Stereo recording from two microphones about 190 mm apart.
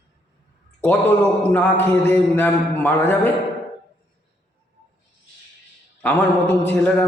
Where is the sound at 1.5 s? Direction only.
10° left (ahead or behind).